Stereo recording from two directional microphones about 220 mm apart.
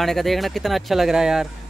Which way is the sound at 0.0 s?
Centre (ahead or behind).